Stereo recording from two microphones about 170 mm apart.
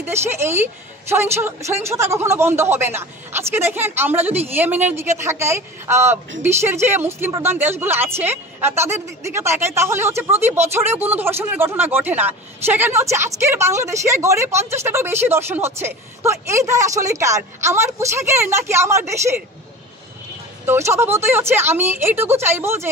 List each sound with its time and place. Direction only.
0.0 s speech: 15° right (ahead or behind)
20.6 s speech: 15° right (ahead or behind)